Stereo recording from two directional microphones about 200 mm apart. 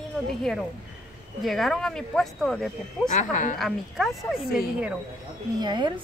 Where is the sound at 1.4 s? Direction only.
Centre (ahead or behind).